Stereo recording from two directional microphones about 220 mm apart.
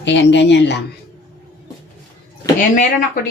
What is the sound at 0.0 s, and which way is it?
Speech, 55° left (ahead or behind).